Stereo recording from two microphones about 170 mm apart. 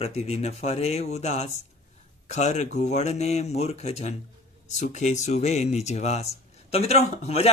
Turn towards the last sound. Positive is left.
turn(degrees=40)  # may be behind; listen again after turning